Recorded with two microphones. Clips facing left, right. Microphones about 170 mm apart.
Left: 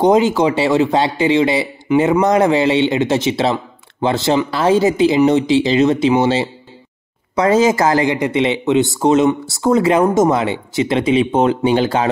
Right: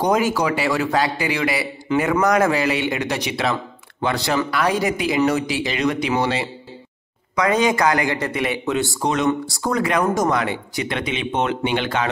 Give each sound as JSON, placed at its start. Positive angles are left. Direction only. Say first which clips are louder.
{"t": 0.0, "sound": "speech", "louder": "left 6 dB", "side_deg": 20}